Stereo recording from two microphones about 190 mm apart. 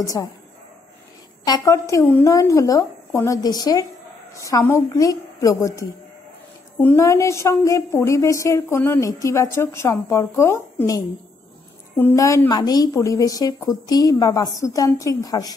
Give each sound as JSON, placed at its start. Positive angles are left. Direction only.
{"t": 0.0, "sound": "a woman's voice", "side_deg": 15}
{"t": 1.4, "sound": "a woman's voice", "side_deg": 20}